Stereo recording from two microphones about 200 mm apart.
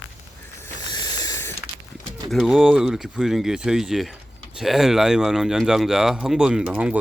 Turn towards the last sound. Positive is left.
turn(degrees=-5)  # may be behind; listen again after turning